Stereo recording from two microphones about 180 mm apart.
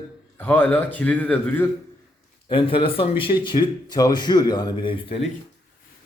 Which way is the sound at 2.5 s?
30° left (ahead or behind).